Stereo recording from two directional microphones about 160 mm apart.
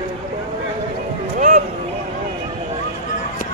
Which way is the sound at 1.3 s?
55° right (ahead or behind).